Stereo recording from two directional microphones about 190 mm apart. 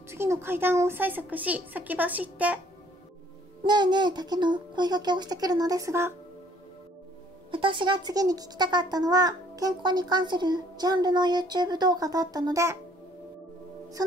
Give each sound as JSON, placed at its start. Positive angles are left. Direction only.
{"t": 0.1, "sound": "a woman's voice", "side_deg": -15}
{"t": 3.6, "sound": "speech", "side_deg": -25}
{"t": 7.5, "sound": "speech", "side_deg": -25}